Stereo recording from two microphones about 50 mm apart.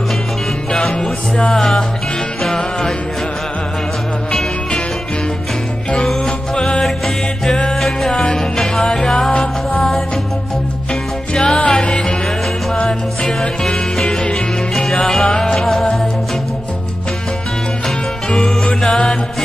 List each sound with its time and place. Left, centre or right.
0.7 s music: centre
4.3 s music: centre
6.0 s music: centre
7.7 s music: centre
17.8 s music: centre